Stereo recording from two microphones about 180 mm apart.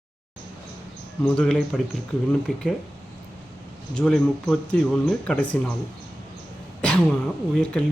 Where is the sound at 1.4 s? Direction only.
5° left (ahead or behind).